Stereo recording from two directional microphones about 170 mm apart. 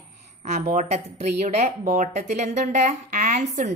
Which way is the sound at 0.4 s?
40° right (ahead or behind).